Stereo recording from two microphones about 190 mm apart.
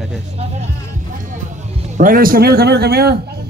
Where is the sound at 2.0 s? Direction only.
50° right (ahead or behind).